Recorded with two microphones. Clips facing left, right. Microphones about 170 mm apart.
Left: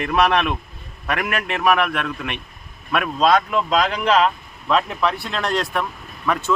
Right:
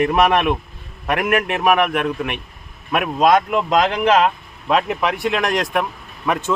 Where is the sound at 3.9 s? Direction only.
50° right (ahead or behind).